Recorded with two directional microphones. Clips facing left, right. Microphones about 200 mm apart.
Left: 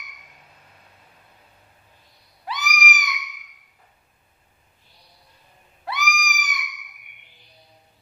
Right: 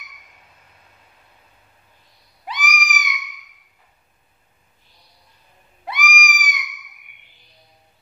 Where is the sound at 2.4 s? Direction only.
20° right (ahead or behind).